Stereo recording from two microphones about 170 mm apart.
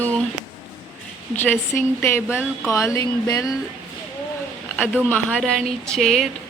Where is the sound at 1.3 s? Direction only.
10° left (ahead or behind).